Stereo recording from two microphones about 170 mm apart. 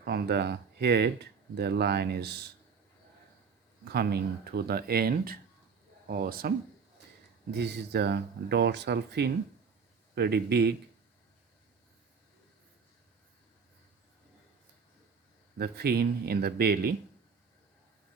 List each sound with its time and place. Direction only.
0.0 s speech: 70° right (ahead or behind)
3.8 s speech: 70° right (ahead or behind)
7.5 s speech: 80° right
15.5 s speech: 70° right (ahead or behind)